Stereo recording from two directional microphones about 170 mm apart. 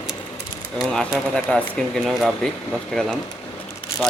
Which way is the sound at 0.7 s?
5° left (ahead or behind).